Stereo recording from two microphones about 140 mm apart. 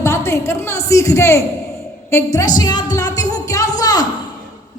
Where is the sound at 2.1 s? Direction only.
25° left (ahead or behind).